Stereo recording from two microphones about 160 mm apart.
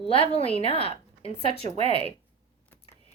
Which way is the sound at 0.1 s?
40° left (ahead or behind).